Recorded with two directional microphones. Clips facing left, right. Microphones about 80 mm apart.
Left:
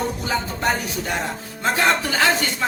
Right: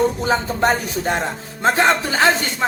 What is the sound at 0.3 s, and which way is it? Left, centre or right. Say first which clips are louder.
Speech: right 5 dB; right.